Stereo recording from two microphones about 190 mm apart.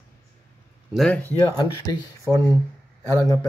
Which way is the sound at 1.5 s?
20° left (ahead or behind).